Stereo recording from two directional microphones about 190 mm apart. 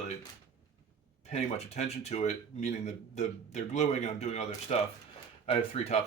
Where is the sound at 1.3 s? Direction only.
35° left (ahead or behind).